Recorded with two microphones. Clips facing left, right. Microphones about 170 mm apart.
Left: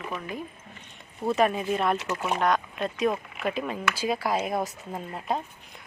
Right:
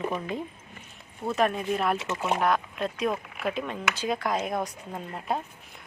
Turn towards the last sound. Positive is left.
turn(degrees=0)  # may be behind; listen again after turning